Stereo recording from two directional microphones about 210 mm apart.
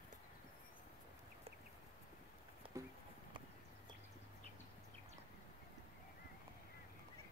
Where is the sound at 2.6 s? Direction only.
25° right (ahead or behind).